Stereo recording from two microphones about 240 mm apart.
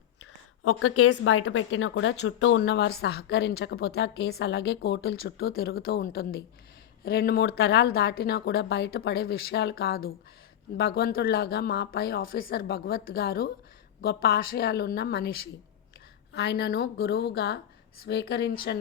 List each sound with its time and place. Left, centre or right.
0.2 s a woman's voice: left